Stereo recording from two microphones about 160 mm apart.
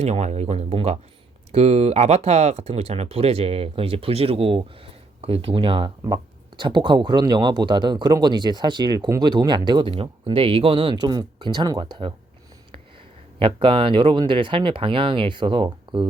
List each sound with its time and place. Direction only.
0.0 s speech: 45° right (ahead or behind)
13.4 s speech: 35° right (ahead or behind)